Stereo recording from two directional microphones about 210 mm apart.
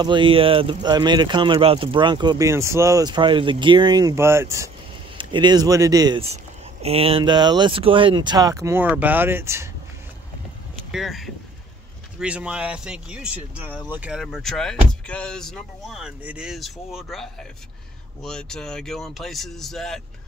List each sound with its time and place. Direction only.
0.0 s speech: 25° right (ahead or behind)
10.9 s speech: centre (ahead or behind)